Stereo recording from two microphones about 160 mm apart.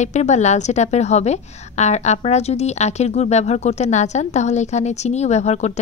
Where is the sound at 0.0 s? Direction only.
45° left (ahead or behind).